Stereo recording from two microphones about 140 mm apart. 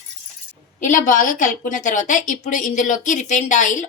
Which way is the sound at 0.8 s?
70° left (ahead or behind).